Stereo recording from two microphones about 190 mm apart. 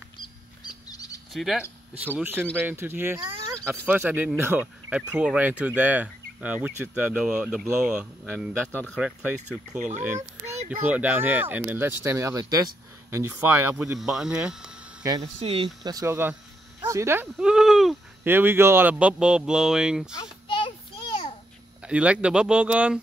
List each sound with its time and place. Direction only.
0.7 s rodents: 20° left (ahead or behind)
1.3 s speech: centre (ahead or behind)
9.7 s a child's voice: 40° right (ahead or behind)
10.9 s speech: 10° right (ahead or behind)
15.4 s speech: 25° right (ahead or behind); by 20.1 s 5° right (ahead or behind)
20.2 s children playing: 25° left (ahead or behind)
21.8 s speech: 5° right (ahead or behind)